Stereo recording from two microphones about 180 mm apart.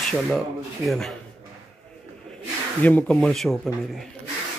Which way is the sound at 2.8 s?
10° left (ahead or behind).